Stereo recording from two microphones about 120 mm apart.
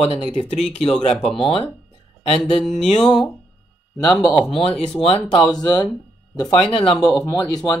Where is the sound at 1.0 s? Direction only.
50° left (ahead or behind).